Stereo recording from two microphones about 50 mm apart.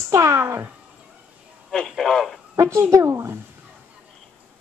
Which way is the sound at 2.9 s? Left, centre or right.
Right.